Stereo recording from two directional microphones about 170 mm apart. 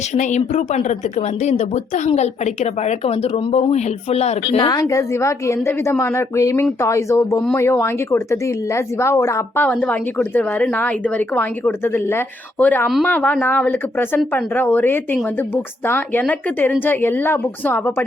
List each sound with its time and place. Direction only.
0.1 s speech: 45° left (ahead or behind); by 18.0 s 10° left (ahead or behind)